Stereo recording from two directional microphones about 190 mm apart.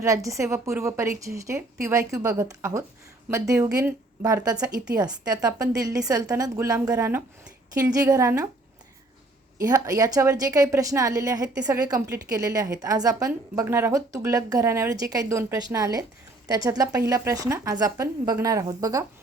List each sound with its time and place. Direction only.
0.0 s a woman's voice: 15° right (ahead or behind)
9.6 s a woman's voice: 15° right (ahead or behind)